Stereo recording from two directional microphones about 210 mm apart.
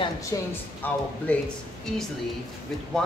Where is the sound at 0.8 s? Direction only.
10° left (ahead or behind).